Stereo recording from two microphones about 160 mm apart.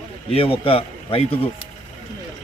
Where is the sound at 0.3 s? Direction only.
35° left (ahead or behind).